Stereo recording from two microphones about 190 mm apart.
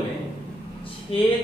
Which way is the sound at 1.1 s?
30° left (ahead or behind).